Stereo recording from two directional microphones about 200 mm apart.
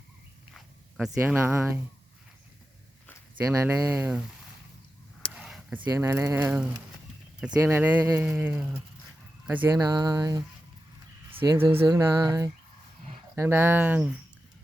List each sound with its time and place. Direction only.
0.5 s speech: centre (ahead or behind)
3.3 s speech: 10° right (ahead or behind)
5.3 s speech: 5° right (ahead or behind)